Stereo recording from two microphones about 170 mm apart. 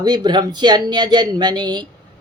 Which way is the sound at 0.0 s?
25° right (ahead or behind).